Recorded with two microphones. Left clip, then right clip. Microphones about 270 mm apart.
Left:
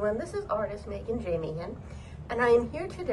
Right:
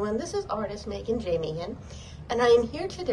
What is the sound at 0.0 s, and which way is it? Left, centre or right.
A woman's voice, centre.